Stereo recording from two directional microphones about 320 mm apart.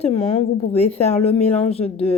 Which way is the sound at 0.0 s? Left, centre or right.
Centre.